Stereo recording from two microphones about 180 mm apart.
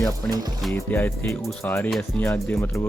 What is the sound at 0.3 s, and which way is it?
Speech, 20° right (ahead or behind).